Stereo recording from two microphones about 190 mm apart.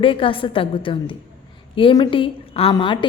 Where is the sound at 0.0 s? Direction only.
25° left (ahead or behind).